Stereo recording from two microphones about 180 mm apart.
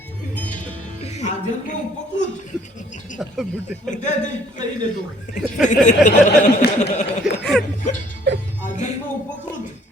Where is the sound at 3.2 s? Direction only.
Centre (ahead or behind).